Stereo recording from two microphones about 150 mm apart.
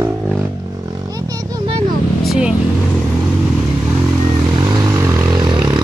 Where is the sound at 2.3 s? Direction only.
5° right (ahead or behind).